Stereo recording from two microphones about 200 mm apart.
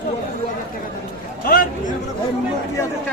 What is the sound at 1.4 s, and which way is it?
Chatter, 45° left (ahead or behind).